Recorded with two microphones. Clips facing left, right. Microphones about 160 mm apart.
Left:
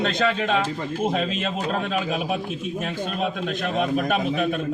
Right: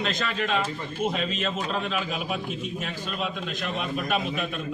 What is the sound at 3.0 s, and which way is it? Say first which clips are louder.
Speech: left 6 dB; 45° left (ahead or behind).